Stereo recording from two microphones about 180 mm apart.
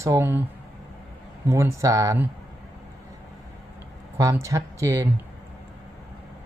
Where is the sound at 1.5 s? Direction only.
15° right (ahead or behind).